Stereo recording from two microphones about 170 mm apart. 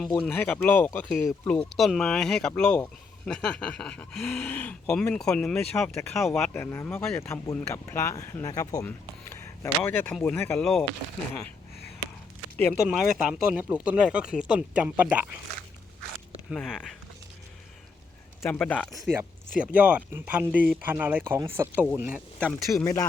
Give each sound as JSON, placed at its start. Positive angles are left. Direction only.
{"t": 0.2, "sound": "speech", "side_deg": 10}
{"t": 6.5, "sound": "speech", "side_deg": 15}
{"t": 12.5, "sound": "speech", "side_deg": 0}
{"t": 16.5, "sound": "speech", "side_deg": 0}
{"t": 18.4, "sound": "speech", "side_deg": 10}
{"t": 19.5, "sound": "speech", "side_deg": -10}
{"t": 22.6, "sound": "speech", "side_deg": 20}